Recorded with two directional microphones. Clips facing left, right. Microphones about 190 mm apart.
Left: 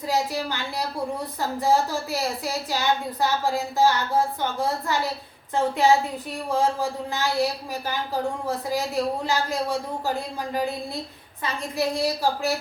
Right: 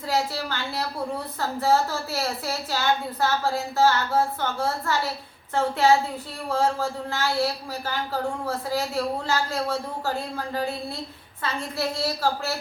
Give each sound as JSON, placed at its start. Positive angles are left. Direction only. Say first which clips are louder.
{"t": 0.1, "sound": "a woman's voice", "louder": "left 1 dB", "side_deg": 15}